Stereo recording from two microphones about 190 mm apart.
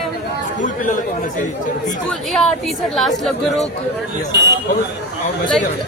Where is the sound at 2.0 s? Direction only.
Centre (ahead or behind).